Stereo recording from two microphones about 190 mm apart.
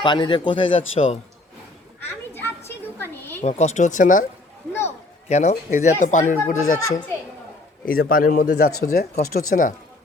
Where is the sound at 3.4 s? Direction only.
35° left (ahead or behind).